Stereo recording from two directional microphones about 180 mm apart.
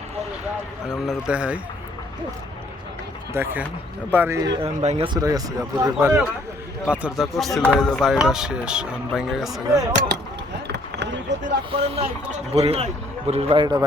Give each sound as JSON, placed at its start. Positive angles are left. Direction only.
{"t": 0.9, "sound": "speech", "side_deg": -5}
{"t": 3.3, "sound": "speech", "side_deg": -10}
{"t": 4.8, "sound": "speech", "side_deg": -40}
{"t": 5.0, "sound": "speech", "side_deg": -20}
{"t": 10.7, "sound": "basketball bounce", "side_deg": -75}
{"t": 11.7, "sound": "speech", "side_deg": -35}